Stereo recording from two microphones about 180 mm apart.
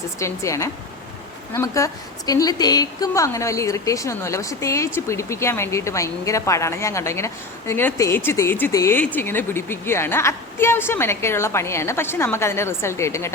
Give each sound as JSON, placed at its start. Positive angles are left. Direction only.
{"t": 0.2, "sound": "a woman's voice", "side_deg": 15}